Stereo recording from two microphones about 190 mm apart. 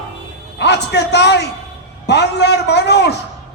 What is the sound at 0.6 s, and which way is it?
A man's voice, 60° left (ahead or behind).